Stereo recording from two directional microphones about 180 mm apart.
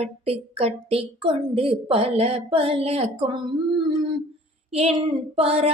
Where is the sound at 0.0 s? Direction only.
35° right (ahead or behind).